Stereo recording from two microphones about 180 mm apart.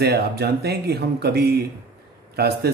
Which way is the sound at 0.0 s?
60° right (ahead or behind).